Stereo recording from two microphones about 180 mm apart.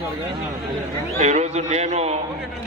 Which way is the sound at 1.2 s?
40° right (ahead or behind).